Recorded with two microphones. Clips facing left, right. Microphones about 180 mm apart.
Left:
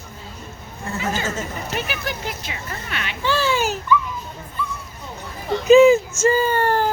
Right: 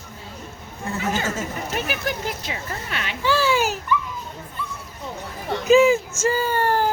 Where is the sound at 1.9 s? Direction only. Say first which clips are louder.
Right 2 dB; 40° right (ahead or behind).